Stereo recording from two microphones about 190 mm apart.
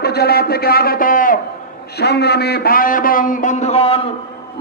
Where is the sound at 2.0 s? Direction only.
60° left (ahead or behind); by 3.9 s 30° left (ahead or behind).